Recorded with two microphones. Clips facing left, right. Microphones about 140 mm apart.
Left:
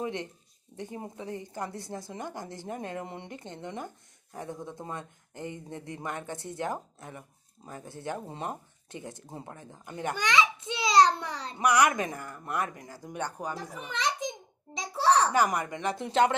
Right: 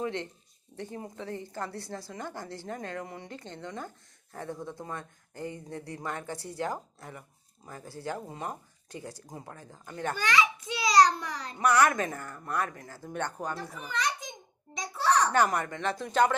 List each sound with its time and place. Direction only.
0.0 s a woman's voice: 20° left (ahead or behind)
11.6 s speech: 15° left (ahead or behind)
13.8 s a sound: 25° left (ahead or behind)
15.3 s a woman's voice: 10° left (ahead or behind)